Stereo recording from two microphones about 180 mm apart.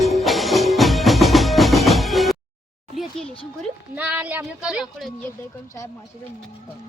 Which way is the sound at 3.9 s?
10° right (ahead or behind).